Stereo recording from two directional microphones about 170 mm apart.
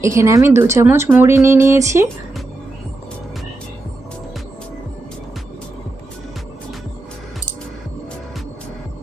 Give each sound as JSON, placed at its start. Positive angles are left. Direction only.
{"t": 0.0, "sound": "speech", "side_deg": -15}